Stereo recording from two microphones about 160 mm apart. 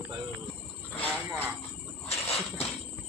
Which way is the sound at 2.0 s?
40° left (ahead or behind).